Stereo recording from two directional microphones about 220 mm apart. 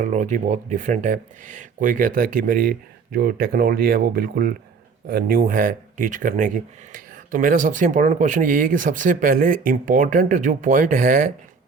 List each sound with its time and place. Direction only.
0.0 s speech: 35° right (ahead or behind)